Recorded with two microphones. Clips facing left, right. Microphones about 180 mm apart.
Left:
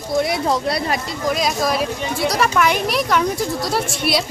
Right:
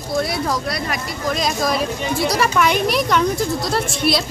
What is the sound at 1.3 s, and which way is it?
Speech, 5° left (ahead or behind).